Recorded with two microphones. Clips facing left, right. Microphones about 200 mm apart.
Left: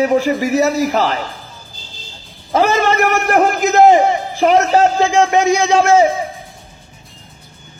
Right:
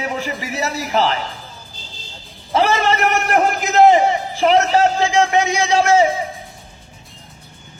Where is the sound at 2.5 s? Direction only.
40° left (ahead or behind).